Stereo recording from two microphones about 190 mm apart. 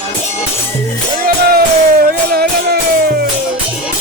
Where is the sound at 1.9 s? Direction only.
55° right (ahead or behind).